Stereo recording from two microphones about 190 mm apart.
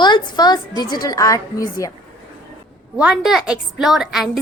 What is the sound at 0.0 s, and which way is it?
A woman's voice, 25° left (ahead or behind).